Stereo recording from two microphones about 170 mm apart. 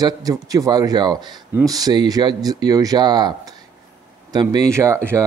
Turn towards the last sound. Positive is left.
turn(degrees=-15)  # may be behind; listen again after turning